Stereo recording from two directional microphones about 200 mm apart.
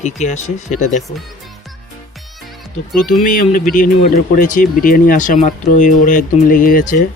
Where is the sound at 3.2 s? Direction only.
35° left (ahead or behind).